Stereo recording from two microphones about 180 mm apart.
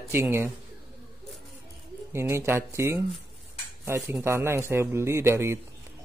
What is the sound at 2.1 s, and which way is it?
A man's voice, 15° right (ahead or behind).